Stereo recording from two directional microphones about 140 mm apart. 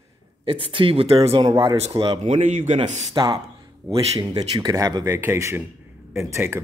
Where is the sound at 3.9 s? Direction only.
45° right (ahead or behind).